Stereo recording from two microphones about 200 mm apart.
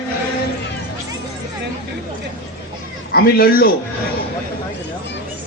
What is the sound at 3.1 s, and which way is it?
Speech, 50° left (ahead or behind).